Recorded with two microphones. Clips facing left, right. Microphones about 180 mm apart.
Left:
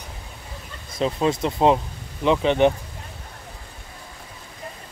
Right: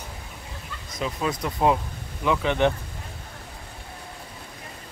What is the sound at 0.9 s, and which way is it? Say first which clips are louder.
Speech: left 6 dB; 25° left (ahead or behind).